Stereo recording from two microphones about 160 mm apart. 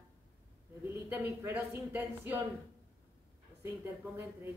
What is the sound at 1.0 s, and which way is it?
A woman's voice, 15° right (ahead or behind).